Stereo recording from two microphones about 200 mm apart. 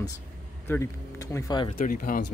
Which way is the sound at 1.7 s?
45° left (ahead or behind).